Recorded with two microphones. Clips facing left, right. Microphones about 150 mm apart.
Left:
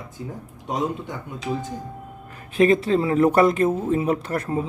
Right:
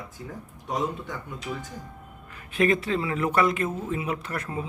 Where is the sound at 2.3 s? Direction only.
35° left (ahead or behind).